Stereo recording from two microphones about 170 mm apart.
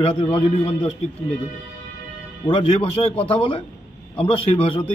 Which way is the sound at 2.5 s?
35° left (ahead or behind).